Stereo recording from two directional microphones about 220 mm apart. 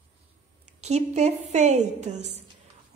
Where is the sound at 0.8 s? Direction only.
30° right (ahead or behind).